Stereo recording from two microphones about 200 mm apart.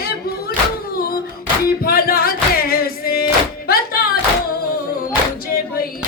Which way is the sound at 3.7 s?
50° left (ahead or behind).